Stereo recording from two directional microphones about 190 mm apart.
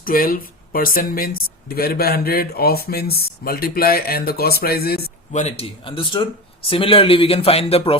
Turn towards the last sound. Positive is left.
turn(degrees=30)  # may be behind; listen again after turning